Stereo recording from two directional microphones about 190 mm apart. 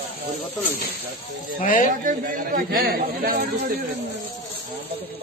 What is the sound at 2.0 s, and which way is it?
Speech, 45° right (ahead or behind).